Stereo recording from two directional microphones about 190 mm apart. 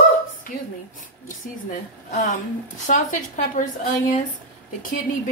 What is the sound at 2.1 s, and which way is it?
A woman's voice, 45° left (ahead or behind).